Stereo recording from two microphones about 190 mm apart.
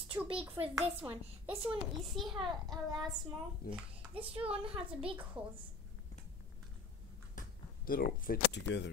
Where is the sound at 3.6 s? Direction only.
50° left (ahead or behind).